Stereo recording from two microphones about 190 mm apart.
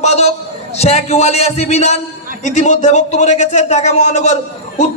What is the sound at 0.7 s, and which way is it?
Speech, 35° left (ahead or behind).